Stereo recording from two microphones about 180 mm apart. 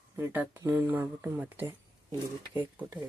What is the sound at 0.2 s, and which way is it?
Speech, 10° right (ahead or behind).